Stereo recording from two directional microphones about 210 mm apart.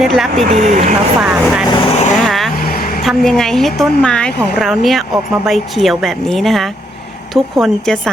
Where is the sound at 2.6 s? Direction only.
45° left (ahead or behind).